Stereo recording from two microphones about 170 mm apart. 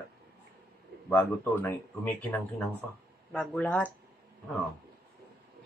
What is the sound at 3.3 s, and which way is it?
Speech, 5° left (ahead or behind).